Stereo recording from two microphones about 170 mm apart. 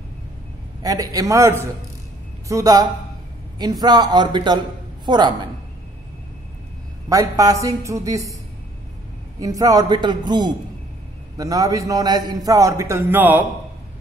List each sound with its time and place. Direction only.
0.8 s a man's voice: 20° right (ahead or behind)
7.1 s a man's voice: 20° right (ahead or behind)
9.4 s a man's voice: 20° right (ahead or behind)